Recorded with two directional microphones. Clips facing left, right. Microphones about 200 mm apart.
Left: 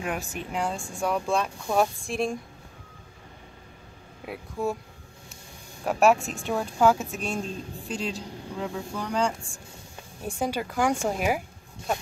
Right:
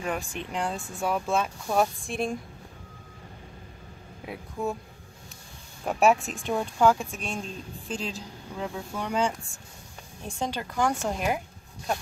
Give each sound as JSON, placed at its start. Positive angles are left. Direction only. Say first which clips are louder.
{"t": 0.0, "sound": "speech", "louder": "even", "side_deg": 5}
{"t": 4.3, "sound": "speech", "louder": "left 2 dB", "side_deg": 0}
{"t": 5.9, "sound": "speech", "louder": "left 1 dB", "side_deg": 0}
{"t": 10.2, "sound": "a woman's voice", "louder": "left 3 dB", "side_deg": 10}